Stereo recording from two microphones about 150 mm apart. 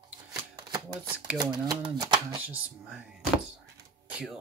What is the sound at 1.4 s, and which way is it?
Speech, 25° right (ahead or behind).